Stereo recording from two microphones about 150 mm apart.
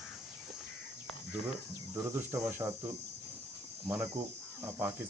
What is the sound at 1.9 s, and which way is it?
Speech, 15° right (ahead or behind).